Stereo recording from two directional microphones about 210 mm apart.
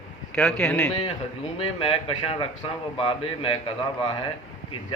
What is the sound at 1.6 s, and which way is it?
A man's voice, 25° left (ahead or behind).